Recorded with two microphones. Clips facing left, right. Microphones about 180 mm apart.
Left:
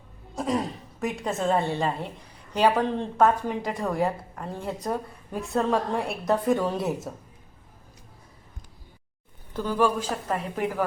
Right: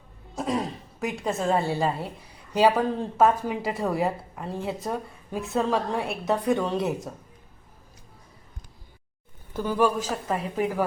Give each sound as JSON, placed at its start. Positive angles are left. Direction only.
{"t": 0.3, "sound": "a woman's voice", "side_deg": 0}
{"t": 9.5, "sound": "a woman's voice", "side_deg": -10}